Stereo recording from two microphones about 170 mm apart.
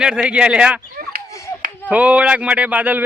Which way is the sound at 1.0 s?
60° right (ahead or behind).